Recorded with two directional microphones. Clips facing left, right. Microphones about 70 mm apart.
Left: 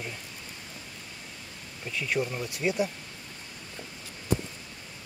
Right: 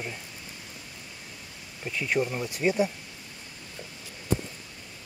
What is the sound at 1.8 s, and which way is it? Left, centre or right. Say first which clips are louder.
Speech: right 2 dB; centre.